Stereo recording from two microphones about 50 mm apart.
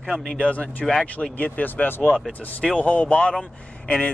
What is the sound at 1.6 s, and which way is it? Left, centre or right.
Speech, left.